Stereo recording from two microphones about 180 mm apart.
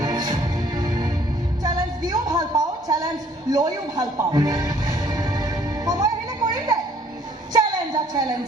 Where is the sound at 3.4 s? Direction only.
20° right (ahead or behind).